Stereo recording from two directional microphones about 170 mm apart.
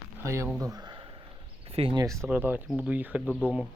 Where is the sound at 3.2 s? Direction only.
5° left (ahead or behind).